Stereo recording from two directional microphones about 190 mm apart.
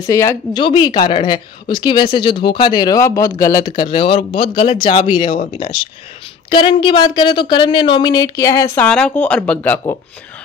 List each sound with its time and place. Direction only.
0.0 s speech: 15° left (ahead or behind)
8.8 s speech: 5° left (ahead or behind)